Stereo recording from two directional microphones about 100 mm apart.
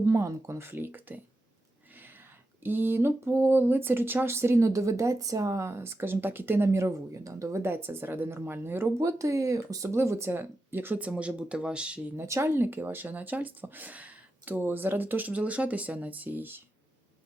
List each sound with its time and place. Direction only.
0.0 s speech: 30° right (ahead or behind)
2.6 s speech: 20° right (ahead or behind)
12.1 s speech: 25° right (ahead or behind)